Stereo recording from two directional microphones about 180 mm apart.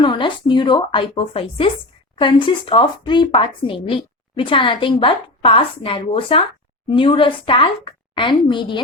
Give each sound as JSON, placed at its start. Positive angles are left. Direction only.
{"t": 0.0, "sound": "a woman's voice", "side_deg": 25}